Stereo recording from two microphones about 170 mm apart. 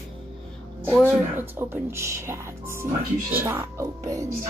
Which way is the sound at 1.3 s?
10° right (ahead or behind).